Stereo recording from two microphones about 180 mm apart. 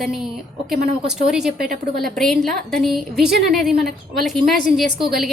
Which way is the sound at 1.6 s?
55° right (ahead or behind).